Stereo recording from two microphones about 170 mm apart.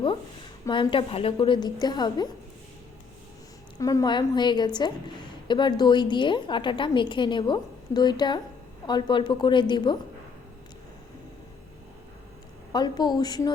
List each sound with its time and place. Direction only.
0.6 s a woman's voice: 30° left (ahead or behind)
3.8 s a woman's voice: 20° left (ahead or behind)
12.7 s a woman's voice: 25° left (ahead or behind)